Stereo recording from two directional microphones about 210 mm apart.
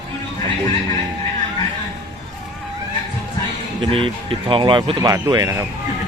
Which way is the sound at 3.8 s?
25° right (ahead or behind).